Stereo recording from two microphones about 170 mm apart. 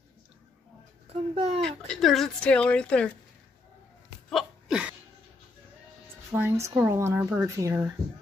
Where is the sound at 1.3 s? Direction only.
35° right (ahead or behind).